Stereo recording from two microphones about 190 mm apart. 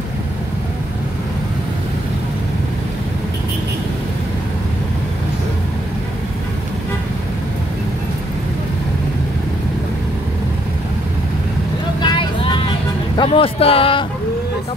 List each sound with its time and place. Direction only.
12.0 s vehicle: 25° left (ahead or behind)
13.2 s speech: 30° left (ahead or behind)